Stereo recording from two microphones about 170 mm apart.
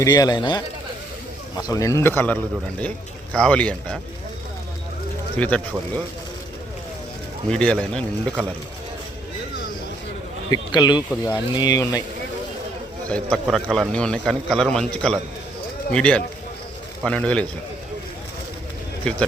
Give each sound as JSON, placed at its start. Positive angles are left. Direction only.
{"t": 0.0, "sound": "a man's voice", "side_deg": 20}
{"t": 5.4, "sound": "a man's voice", "side_deg": 5}
{"t": 7.5, "sound": "a man's voice", "side_deg": 5}
{"t": 10.5, "sound": "speech", "side_deg": 25}
{"t": 13.1, "sound": "a man's voice", "side_deg": 5}
{"t": 19.1, "sound": "a man's voice", "side_deg": 5}